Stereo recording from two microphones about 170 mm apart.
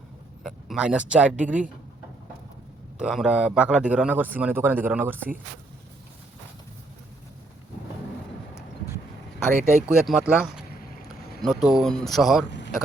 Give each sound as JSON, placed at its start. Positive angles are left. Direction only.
{"t": 0.4, "sound": "speech", "side_deg": -5}
{"t": 3.0, "sound": "a man's voice", "side_deg": -5}
{"t": 9.8, "sound": "speech", "side_deg": -5}
{"t": 12.5, "sound": "a sound", "side_deg": 90}